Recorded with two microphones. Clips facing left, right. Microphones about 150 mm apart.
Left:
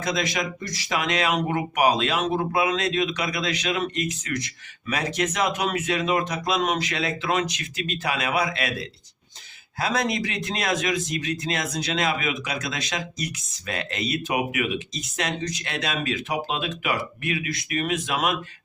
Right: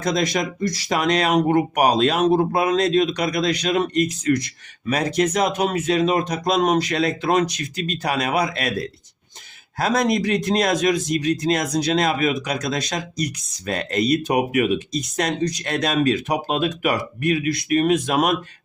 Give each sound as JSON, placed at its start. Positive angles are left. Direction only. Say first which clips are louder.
{"t": 0.0, "sound": "a man's voice", "louder": "right 5 dB", "side_deg": -45}